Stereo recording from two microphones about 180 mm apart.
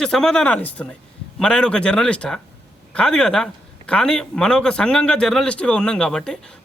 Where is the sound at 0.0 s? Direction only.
Centre (ahead or behind).